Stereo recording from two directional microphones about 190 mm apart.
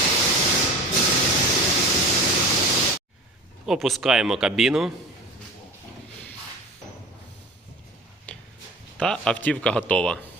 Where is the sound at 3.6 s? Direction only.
Centre (ahead or behind).